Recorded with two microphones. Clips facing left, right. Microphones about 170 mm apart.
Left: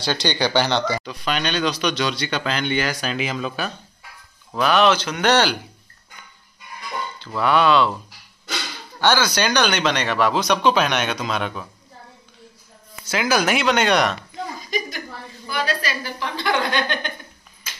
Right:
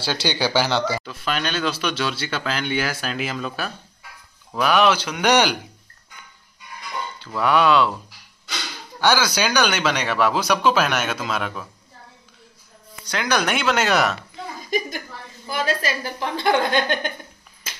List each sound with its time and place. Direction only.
0.0 s speech: 10° right (ahead or behind)
7.3 s speech: 10° right (ahead or behind)
9.0 s speech: 10° right (ahead or behind)
13.0 s speech: 5° left (ahead or behind)
14.7 s a woman's voice: 50° right (ahead or behind)